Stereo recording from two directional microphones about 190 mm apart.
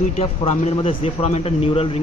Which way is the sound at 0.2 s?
30° left (ahead or behind).